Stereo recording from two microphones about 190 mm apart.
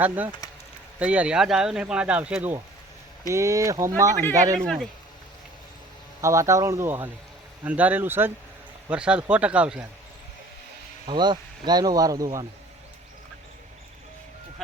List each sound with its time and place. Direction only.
0.0 s speech: 10° right (ahead or behind)
4.6 s speech: centre (ahead or behind)
6.2 s speech: 15° right (ahead or behind)
11.0 s speech: 25° right (ahead or behind)